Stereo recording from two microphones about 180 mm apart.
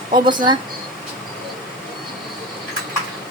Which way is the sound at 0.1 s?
25° right (ahead or behind).